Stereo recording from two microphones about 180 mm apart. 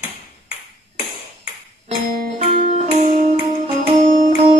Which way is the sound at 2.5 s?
40° right (ahead or behind).